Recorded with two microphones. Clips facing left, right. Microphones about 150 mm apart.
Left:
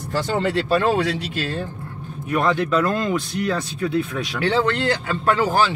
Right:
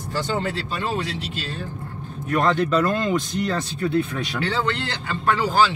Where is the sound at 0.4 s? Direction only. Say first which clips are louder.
Left 7 dB; 70° left (ahead or behind).